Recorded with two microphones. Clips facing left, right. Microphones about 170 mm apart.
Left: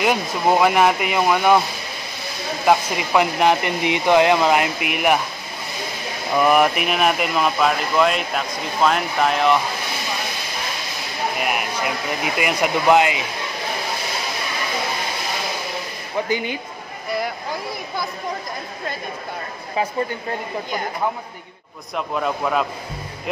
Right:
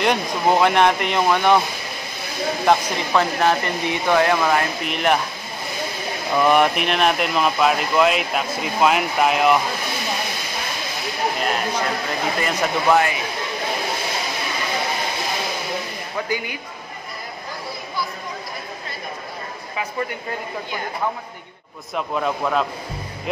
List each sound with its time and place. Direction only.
0.0 s speech: 5° left (ahead or behind)
2.6 s speech: 10° left (ahead or behind)
6.3 s speech: 5° left (ahead or behind)
11.3 s a sound: 10° left (ahead or behind)
12.4 s speech: 15° left (ahead or behind)
16.2 s speech: 20° left (ahead or behind)
21.9 s speech: centre (ahead or behind)